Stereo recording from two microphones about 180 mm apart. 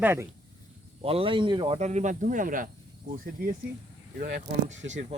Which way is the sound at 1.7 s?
40° right (ahead or behind).